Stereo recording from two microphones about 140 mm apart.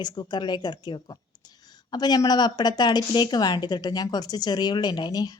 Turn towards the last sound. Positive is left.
turn(degrees=30)  # may be behind; listen again after turning